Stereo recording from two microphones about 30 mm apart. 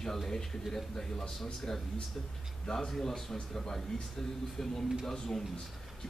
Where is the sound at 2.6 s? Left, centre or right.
Centre.